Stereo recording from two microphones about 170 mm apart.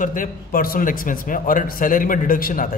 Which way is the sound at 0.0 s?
55° left (ahead or behind).